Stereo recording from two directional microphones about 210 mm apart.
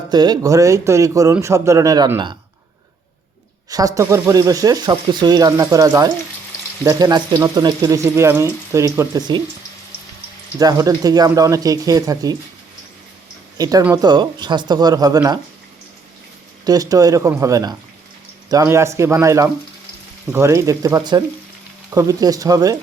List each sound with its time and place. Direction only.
0.1 s speech: 20° right (ahead or behind)
3.7 s speech: 15° right (ahead or behind)
10.6 s speech: 15° right (ahead or behind)
13.6 s speech: 15° right (ahead or behind)
16.6 s speech: 15° right (ahead or behind)